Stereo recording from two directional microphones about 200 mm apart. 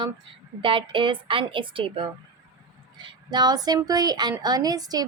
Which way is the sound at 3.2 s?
20° right (ahead or behind).